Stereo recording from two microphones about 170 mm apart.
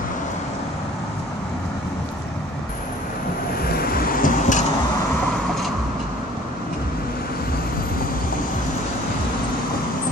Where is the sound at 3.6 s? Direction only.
60° left (ahead or behind).